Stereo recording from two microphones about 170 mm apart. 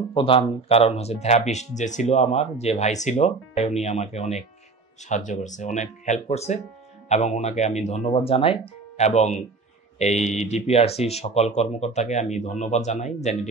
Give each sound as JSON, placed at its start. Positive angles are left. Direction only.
{"t": 0.1, "sound": "speech", "side_deg": 30}